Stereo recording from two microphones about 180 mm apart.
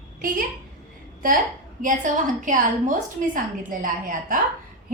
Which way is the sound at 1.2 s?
45° right (ahead or behind).